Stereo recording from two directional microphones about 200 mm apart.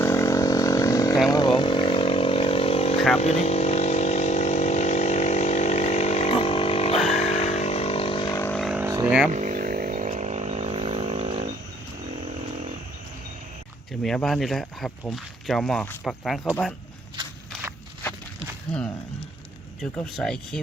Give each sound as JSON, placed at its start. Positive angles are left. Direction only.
{"t": 0.0, "sound": "wild animals", "side_deg": 15}
{"t": 1.3, "sound": "vehicle", "side_deg": 20}
{"t": 8.4, "sound": "vehicle", "side_deg": 10}
{"t": 8.6, "sound": "vehicle", "side_deg": -10}
{"t": 9.0, "sound": "vehicle", "side_deg": -5}
{"t": 9.3, "sound": "vehicle", "side_deg": -40}
{"t": 14.0, "sound": "speech", "side_deg": 0}
{"t": 19.8, "sound": "speech", "side_deg": 0}